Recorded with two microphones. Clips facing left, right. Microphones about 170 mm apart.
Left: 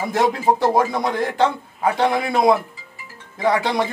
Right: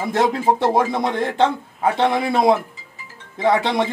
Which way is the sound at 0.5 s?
Centre (ahead or behind).